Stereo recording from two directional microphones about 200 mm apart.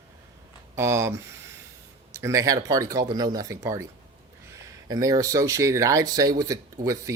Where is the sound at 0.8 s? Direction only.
15° right (ahead or behind).